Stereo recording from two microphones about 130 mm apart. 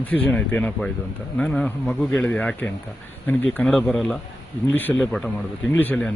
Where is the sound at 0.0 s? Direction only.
10° left (ahead or behind).